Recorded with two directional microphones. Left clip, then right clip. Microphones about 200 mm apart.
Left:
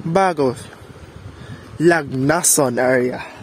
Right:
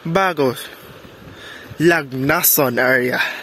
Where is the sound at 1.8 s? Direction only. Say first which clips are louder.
Even; 10° left (ahead or behind).